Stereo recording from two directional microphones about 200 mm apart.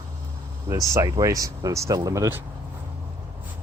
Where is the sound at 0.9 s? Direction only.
15° right (ahead or behind).